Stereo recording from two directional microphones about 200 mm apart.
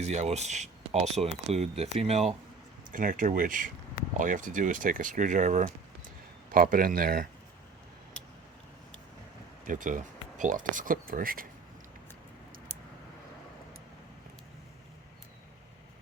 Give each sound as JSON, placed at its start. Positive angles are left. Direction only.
{"t": 0.0, "sound": "speech", "side_deg": -35}
{"t": 2.9, "sound": "speech", "side_deg": -40}
{"t": 9.6, "sound": "speech", "side_deg": -40}